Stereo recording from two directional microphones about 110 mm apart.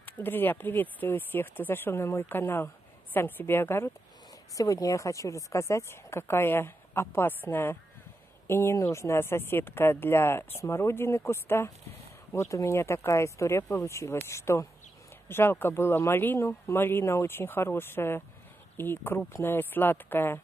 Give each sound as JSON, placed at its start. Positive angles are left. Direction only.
{"t": 0.0, "sound": "speech", "side_deg": 20}
{"t": 4.6, "sound": "speech", "side_deg": 30}